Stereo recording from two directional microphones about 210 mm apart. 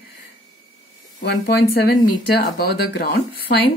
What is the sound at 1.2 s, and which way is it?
Speech, 50° left (ahead or behind).